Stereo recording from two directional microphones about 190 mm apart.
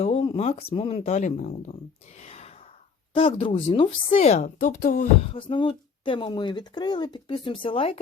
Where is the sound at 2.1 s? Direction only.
35° left (ahead or behind).